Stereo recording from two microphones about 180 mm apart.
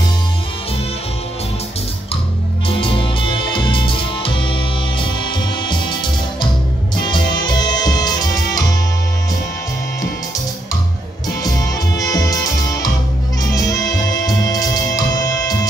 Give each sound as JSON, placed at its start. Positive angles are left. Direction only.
{"t": 2.8, "sound": "music", "side_deg": 30}
{"t": 7.1, "sound": "music", "side_deg": 25}
{"t": 12.0, "sound": "music", "side_deg": 20}
{"t": 13.8, "sound": "music", "side_deg": 20}